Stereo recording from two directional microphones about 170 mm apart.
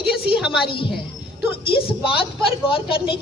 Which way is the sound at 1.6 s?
30° left (ahead or behind).